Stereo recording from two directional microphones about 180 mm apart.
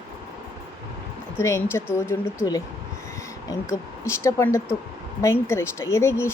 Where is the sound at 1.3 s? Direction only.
15° left (ahead or behind).